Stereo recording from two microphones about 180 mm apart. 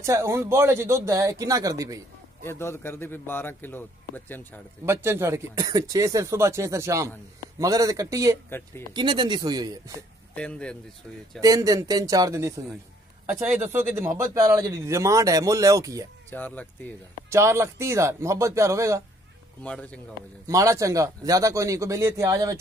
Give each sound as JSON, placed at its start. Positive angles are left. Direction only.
{"t": 0.0, "sound": "speech", "side_deg": -15}
{"t": 2.4, "sound": "a man's voice", "side_deg": 15}
{"t": 4.8, "sound": "a man's voice", "side_deg": -15}
{"t": 8.5, "sound": "a man's voice", "side_deg": 10}
{"t": 8.9, "sound": "a man's voice", "side_deg": -25}
{"t": 10.3, "sound": "speech", "side_deg": 5}
{"t": 11.4, "sound": "a man's voice", "side_deg": -20}
{"t": 16.3, "sound": "a man's voice", "side_deg": 10}
{"t": 17.3, "sound": "speech", "side_deg": -15}
{"t": 19.6, "sound": "a man's voice", "side_deg": 5}
{"t": 20.4, "sound": "speech", "side_deg": -15}